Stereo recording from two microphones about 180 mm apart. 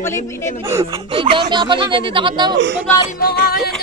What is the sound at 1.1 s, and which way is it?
Speech, 30° right (ahead or behind).